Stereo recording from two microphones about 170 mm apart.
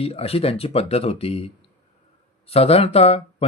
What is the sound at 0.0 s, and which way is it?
Speech, 35° left (ahead or behind).